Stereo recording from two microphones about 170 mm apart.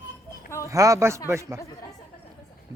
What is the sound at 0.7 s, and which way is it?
Speech, 20° right (ahead or behind).